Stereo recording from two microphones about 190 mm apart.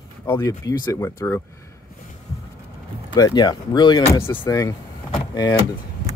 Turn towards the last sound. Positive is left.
turn(degrees=20)  # may be behind; listen again after turning